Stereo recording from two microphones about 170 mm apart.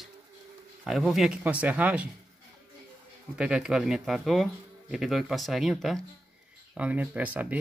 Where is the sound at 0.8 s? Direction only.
5° right (ahead or behind).